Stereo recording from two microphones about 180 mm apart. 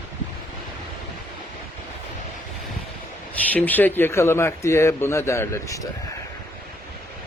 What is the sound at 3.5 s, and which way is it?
A man's voice, 10° left (ahead or behind).